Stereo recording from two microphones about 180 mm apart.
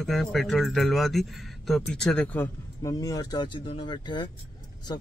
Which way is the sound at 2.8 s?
20° left (ahead or behind).